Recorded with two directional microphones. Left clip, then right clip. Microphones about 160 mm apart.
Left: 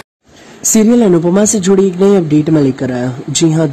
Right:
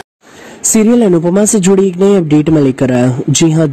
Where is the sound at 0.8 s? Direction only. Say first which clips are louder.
Even; 15° right (ahead or behind).